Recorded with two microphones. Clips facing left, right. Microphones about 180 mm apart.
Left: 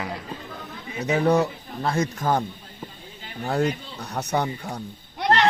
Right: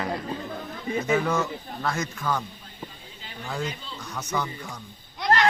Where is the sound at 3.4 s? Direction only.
65° left (ahead or behind).